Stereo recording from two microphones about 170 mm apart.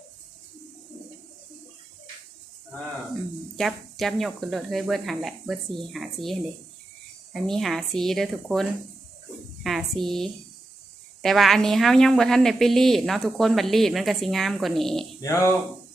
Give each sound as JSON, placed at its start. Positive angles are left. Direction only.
{"t": 3.6, "sound": "a woman's voice", "side_deg": 0}
{"t": 9.6, "sound": "a woman's voice", "side_deg": 0}